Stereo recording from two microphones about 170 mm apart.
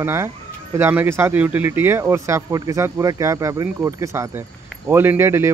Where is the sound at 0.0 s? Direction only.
15° right (ahead or behind).